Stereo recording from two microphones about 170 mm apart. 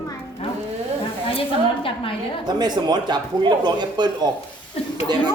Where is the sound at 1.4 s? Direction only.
30° left (ahead or behind).